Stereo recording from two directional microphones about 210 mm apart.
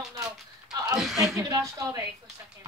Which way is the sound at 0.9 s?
Centre (ahead or behind).